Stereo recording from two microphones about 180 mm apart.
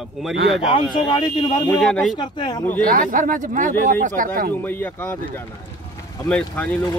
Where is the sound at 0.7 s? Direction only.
25° left (ahead or behind).